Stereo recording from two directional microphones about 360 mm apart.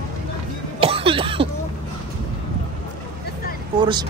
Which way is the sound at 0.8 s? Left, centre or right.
Centre.